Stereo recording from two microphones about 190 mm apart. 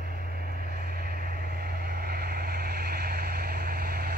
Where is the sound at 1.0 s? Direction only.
55° right (ahead or behind).